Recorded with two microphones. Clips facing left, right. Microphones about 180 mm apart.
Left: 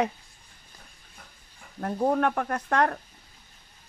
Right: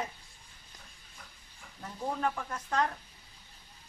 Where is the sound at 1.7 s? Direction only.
65° left (ahead or behind).